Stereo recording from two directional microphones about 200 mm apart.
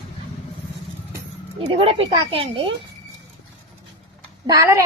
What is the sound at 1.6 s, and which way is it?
A woman's voice, 30° right (ahead or behind).